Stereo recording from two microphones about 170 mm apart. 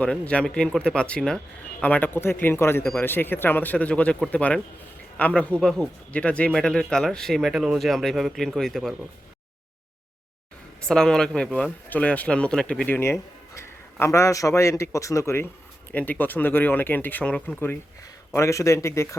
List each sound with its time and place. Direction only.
0.0 s speech: 5° left (ahead or behind)
10.8 s speech: 5° left (ahead or behind)